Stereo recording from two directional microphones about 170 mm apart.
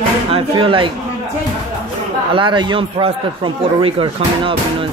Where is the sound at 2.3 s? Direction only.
30° right (ahead or behind).